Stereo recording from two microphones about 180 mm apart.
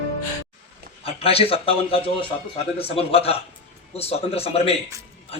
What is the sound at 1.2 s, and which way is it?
A man's voice, 30° left (ahead or behind).